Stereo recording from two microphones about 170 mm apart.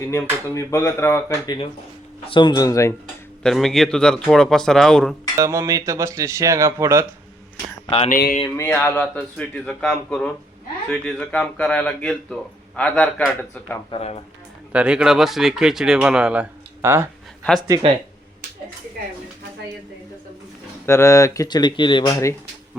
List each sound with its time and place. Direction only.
0.1 s speech: 15° left (ahead or behind)
2.2 s speech: 30° left (ahead or behind)
3.4 s speech: centre (ahead or behind)
5.4 s speech: 15° right (ahead or behind)
7.9 s speech: 35° left (ahead or behind)
8.1 s speech: 55° left (ahead or behind)
8.5 s speech: 10° left (ahead or behind)
13.9 s speech: 40° left (ahead or behind)
14.7 s speech: 5° right (ahead or behind)
17.6 s speech: 25° right (ahead or behind)
20.8 s speech: 15° left (ahead or behind)